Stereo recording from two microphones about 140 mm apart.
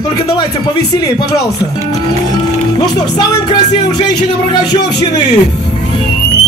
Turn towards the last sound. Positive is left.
turn(degrees=30)  # may be behind; listen again after turning